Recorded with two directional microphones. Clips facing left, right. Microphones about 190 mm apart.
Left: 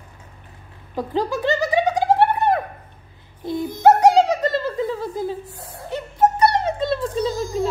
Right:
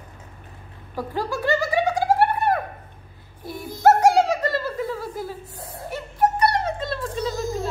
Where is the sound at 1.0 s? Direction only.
20° left (ahead or behind).